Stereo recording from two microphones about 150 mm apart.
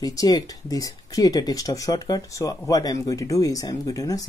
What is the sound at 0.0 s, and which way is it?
Speech, 25° left (ahead or behind).